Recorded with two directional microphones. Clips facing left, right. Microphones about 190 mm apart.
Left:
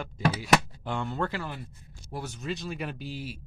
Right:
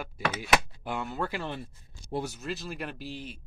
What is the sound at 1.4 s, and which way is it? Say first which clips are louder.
Speech: right 1 dB; 25° right (ahead or behind).